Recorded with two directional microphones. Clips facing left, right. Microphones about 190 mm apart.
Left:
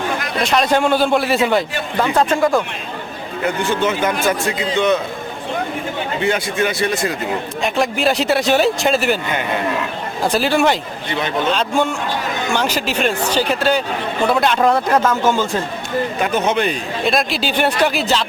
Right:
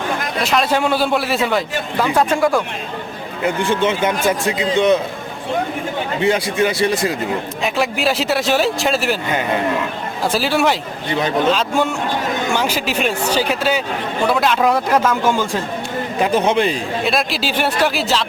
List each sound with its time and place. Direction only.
0.4 s speech: 5° right (ahead or behind)
3.4 s a man's voice: 30° right (ahead or behind)
6.2 s a man's voice: 30° right (ahead or behind)
7.6 s speech: centre (ahead or behind)
10.2 s speech: centre (ahead or behind)
12.5 s speech: 10° right (ahead or behind)
16.5 s a man's voice: 30° right (ahead or behind)
17.0 s speech: centre (ahead or behind)